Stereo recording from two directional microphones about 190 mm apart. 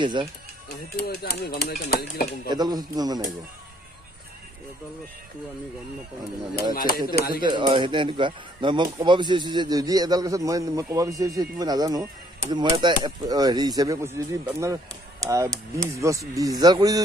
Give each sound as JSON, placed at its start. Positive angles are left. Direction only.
{"t": 0.0, "sound": "speech", "side_deg": -25}
{"t": 0.9, "sound": "speech", "side_deg": 55}
{"t": 2.4, "sound": "speech", "side_deg": -20}
{"t": 6.5, "sound": "speech", "side_deg": 50}
{"t": 7.4, "sound": "speech", "side_deg": -25}